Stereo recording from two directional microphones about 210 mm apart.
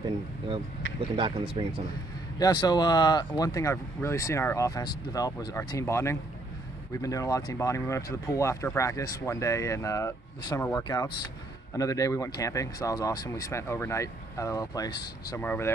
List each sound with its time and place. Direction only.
1.1 s speech: 25° right (ahead or behind)
2.3 s speech: 20° left (ahead or behind)